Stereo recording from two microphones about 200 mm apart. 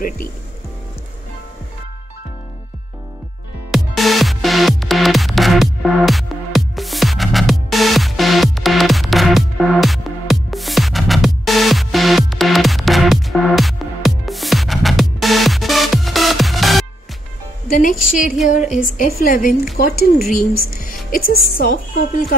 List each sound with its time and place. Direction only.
3.7 s music: centre (ahead or behind)
17.7 s music: 40° left (ahead or behind)
18.5 s a woman's voice: 40° left (ahead or behind)